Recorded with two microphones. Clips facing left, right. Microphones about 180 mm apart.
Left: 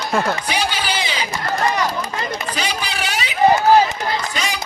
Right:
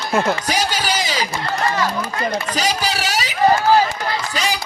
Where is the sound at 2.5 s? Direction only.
40° right (ahead or behind).